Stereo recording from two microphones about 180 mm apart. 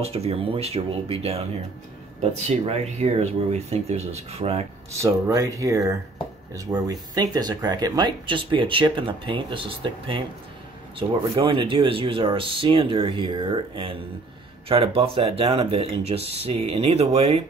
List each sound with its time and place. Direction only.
0.0 s speech: 35° right (ahead or behind)
4.9 s speech: 15° right (ahead or behind); by 17.4 s 35° right (ahead or behind)